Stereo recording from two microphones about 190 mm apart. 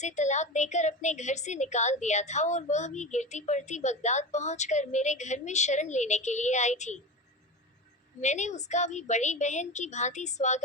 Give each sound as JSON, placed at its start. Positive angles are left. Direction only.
{"t": 0.0, "sound": "a woman's voice", "side_deg": 40}
{"t": 8.2, "sound": "a woman's voice", "side_deg": 40}